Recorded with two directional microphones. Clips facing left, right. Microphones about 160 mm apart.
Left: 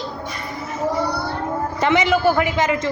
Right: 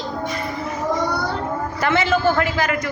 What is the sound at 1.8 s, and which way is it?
A man's voice, 15° left (ahead or behind).